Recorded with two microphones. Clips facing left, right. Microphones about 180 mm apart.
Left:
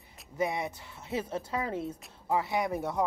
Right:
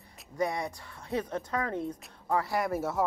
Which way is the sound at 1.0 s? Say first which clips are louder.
Right 1 dB; 25° left (ahead or behind).